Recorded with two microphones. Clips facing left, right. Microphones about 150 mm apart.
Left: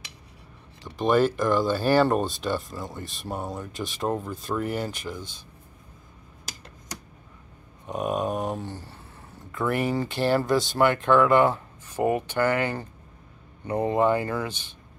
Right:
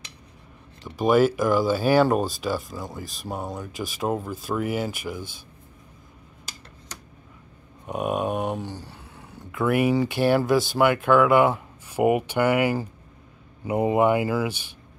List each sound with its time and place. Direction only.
0.8 s speech: 10° right (ahead or behind)
7.8 s speech: 5° right (ahead or behind)